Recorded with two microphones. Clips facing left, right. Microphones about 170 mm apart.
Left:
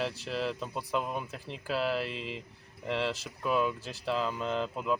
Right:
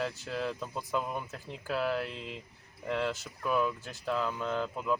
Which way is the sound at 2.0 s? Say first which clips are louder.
Left 3 dB; 85° left.